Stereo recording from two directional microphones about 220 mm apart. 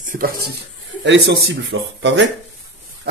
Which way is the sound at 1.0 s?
55° right (ahead or behind).